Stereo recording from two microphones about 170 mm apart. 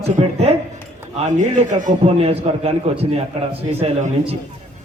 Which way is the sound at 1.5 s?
40° right (ahead or behind).